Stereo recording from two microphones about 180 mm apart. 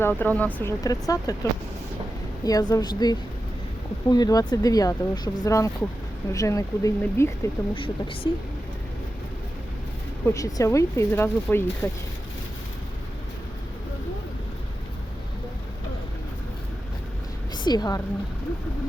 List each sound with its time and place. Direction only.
0.0 s speech: 10° left (ahead or behind)
0.8 s speech: 20° left (ahead or behind)
2.4 s speech: 20° left (ahead or behind)
7.7 s speech: 30° left (ahead or behind)
10.2 s speech: 15° left (ahead or behind)
17.6 s a woman's voice: 25° left (ahead or behind)